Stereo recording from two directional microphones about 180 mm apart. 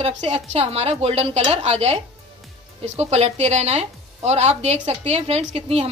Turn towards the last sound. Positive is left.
turn(degrees=-35)  # may be behind; listen again after turning